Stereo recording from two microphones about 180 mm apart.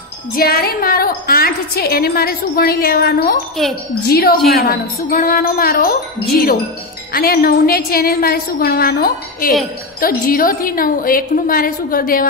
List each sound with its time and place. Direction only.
0.3 s a woman's voice: 55° left (ahead or behind)